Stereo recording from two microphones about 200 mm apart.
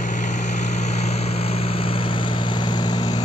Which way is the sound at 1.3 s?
30° left (ahead or behind).